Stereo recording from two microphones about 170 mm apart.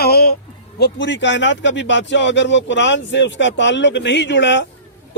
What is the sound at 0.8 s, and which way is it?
A man's voice, 90° left.